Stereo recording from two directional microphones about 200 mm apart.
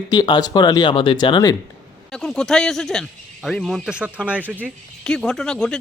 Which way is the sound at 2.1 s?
5° left (ahead or behind).